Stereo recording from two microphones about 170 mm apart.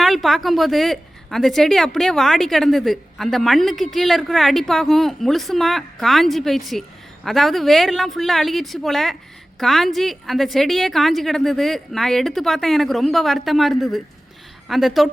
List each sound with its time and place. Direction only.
0.0 s a woman's voice: centre (ahead or behind)